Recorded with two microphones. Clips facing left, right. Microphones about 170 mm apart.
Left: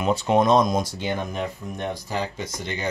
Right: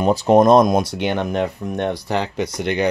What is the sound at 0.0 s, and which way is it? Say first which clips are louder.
Speech: right 7 dB; 40° right (ahead or behind).